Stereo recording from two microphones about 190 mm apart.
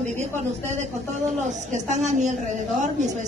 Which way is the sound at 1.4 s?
40° right (ahead or behind).